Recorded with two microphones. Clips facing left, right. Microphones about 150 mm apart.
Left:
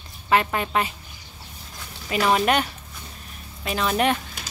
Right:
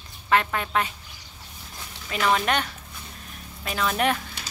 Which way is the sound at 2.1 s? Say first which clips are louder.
Left 3 dB; 10° left (ahead or behind).